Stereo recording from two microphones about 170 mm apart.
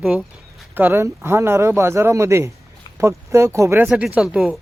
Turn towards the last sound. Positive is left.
turn(degrees=-5)  # may be behind; listen again after turning